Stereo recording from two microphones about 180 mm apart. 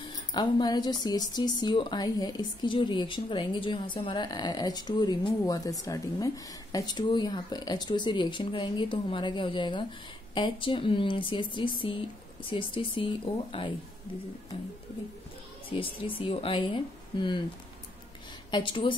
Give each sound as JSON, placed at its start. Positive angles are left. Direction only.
{"t": 0.3, "sound": "speech", "side_deg": 25}
{"t": 15.7, "sound": "speech", "side_deg": 30}
{"t": 18.5, "sound": "speech", "side_deg": 25}